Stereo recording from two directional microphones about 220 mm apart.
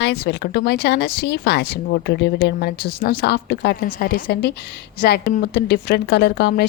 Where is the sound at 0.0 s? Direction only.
45° left (ahead or behind).